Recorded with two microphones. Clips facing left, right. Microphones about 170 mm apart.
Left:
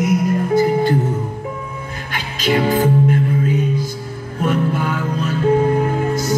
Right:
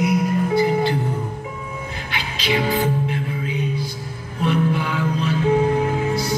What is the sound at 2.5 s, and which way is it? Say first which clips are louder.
Music: left 5 dB; 45° left (ahead or behind).